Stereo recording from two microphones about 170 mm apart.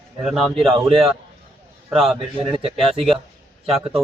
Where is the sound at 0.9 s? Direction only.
35° right (ahead or behind).